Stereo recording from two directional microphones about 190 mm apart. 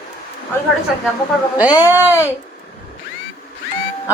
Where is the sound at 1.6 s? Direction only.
20° left (ahead or behind).